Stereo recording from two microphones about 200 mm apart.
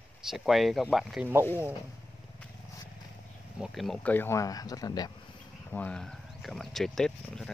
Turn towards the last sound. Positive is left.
turn(degrees=0)  # may be behind; listen again after turning